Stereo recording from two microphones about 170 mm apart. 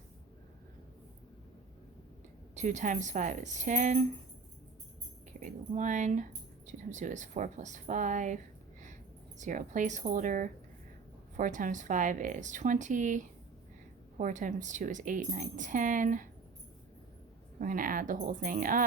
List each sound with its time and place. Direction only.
2.6 s a woman's voice: 45° right (ahead or behind)
5.4 s a woman's voice: 45° right (ahead or behind)
9.4 s a woman's voice: 45° right (ahead or behind)
17.6 s a woman's voice: 55° right (ahead or behind)